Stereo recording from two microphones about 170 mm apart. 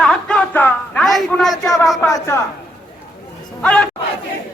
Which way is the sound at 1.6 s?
20° left (ahead or behind).